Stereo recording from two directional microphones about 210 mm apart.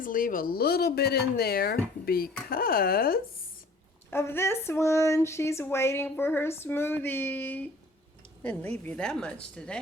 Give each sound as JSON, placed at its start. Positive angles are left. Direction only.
{"t": 0.0, "sound": "speech", "side_deg": 40}
{"t": 4.1, "sound": "speech", "side_deg": 10}